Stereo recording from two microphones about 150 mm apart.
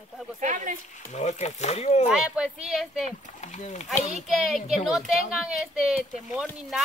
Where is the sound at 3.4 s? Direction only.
50° left (ahead or behind).